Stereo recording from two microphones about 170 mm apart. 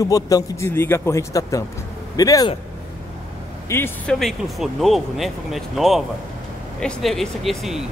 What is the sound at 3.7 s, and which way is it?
Speech, 15° left (ahead or behind).